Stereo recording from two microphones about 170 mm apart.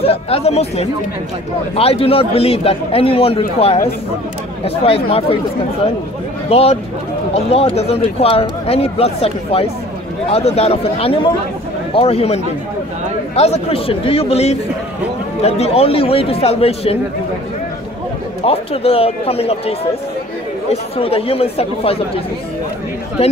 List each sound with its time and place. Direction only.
0.0 s speech: 35° left (ahead or behind)
6.5 s speech: 35° left (ahead or behind)
18.4 s speech: 35° left (ahead or behind)
20.7 s speech: 35° left (ahead or behind)